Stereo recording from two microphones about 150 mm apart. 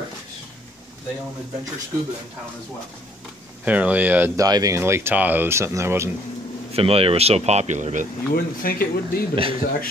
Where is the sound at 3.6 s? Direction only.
10° right (ahead or behind).